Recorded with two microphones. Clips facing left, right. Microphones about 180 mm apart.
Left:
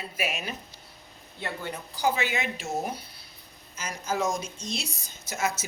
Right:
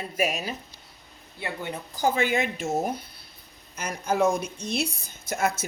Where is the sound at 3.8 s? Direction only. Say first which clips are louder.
Right 5 dB; 60° right (ahead or behind).